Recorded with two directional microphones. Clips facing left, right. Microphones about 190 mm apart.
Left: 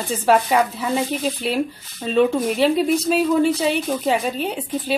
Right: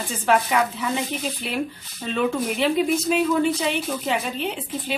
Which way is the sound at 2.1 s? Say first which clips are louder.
Left 6 dB; 35° left (ahead or behind).